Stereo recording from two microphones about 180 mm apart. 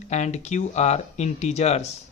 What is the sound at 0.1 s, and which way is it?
Speech, 40° left (ahead or behind).